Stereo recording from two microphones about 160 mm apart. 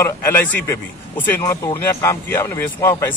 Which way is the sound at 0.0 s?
15° left (ahead or behind).